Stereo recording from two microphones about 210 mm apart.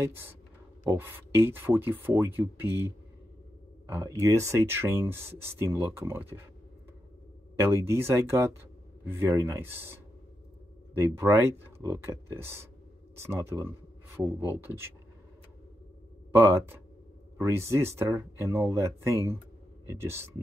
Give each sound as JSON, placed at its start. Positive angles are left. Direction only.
{"t": 0.0, "sound": "speech", "side_deg": -10}
{"t": 3.8, "sound": "speech", "side_deg": -10}
{"t": 7.5, "sound": "speech", "side_deg": -10}
{"t": 11.0, "sound": "speech", "side_deg": -15}
{"t": 16.3, "sound": "speech", "side_deg": -10}